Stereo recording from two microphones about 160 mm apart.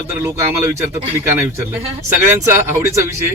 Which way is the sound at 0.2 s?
20° right (ahead or behind).